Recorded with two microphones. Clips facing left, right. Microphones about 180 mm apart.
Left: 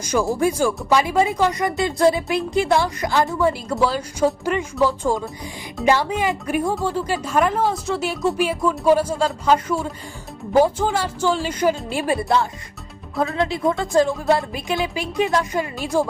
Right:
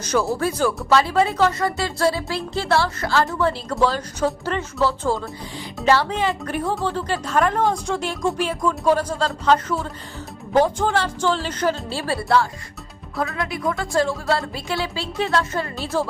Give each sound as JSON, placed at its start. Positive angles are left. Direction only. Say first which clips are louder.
{"t": 0.0, "sound": "a woman's voice", "louder": "left 2 dB", "side_deg": 10}